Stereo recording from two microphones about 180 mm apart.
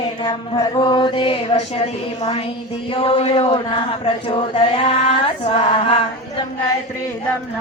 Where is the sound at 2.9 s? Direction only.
30° left (ahead or behind).